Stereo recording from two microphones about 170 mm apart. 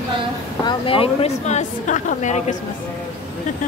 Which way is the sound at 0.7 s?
30° left (ahead or behind).